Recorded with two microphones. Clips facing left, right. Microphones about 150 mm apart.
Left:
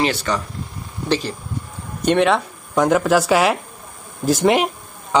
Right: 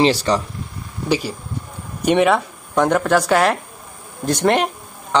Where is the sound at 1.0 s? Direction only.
10° right (ahead or behind).